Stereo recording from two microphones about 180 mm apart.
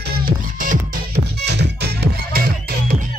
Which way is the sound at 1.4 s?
65° right (ahead or behind).